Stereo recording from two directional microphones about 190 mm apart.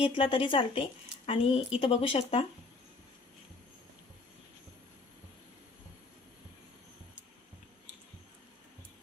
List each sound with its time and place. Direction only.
0.0 s speech: 30° left (ahead or behind)